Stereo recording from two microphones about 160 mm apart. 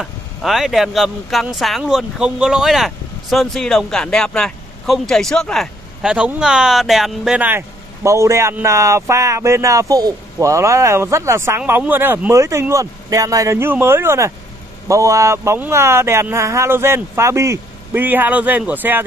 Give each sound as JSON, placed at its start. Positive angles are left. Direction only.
{"t": 0.0, "sound": "speech", "side_deg": 0}